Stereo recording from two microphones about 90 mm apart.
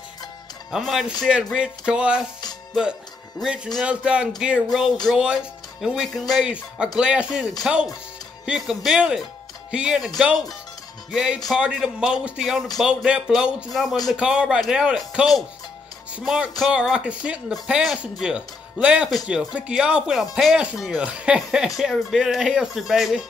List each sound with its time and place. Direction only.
0.7 s speech: 5° right (ahead or behind)
16.7 s speech: 10° right (ahead or behind)